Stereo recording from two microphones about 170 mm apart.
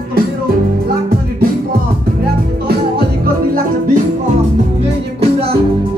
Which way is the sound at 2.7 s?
65° right (ahead or behind).